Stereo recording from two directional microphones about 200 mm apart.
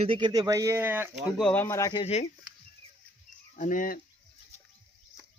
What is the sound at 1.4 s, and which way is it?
Speech, 5° left (ahead or behind).